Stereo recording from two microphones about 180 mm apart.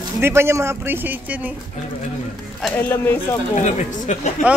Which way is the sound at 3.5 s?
40° left (ahead or behind).